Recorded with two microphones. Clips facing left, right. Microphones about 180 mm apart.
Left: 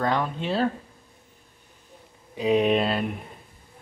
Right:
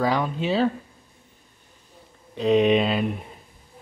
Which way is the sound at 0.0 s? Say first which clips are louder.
Right 2 dB; 5° right (ahead or behind).